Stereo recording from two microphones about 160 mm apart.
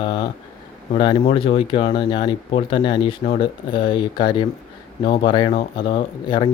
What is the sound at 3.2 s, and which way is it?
Speech, 40° left (ahead or behind).